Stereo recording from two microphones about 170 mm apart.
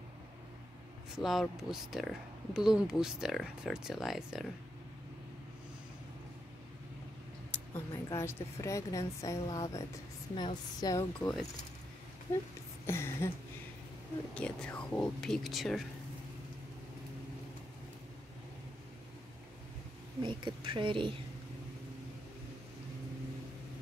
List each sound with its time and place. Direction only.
1.2 s speech: centre (ahead or behind)
7.5 s a woman's voice: 15° left (ahead or behind)
11.1 s a woman's voice: 5° left (ahead or behind)
14.3 s speech: 5° left (ahead or behind)
20.2 s a woman's voice: 30° right (ahead or behind)